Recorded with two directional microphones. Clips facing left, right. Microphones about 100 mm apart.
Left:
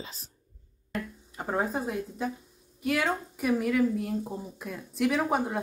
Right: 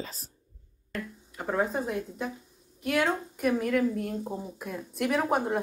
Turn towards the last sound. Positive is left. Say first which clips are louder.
# even
turn(degrees=0)  # may be behind; listen again after turning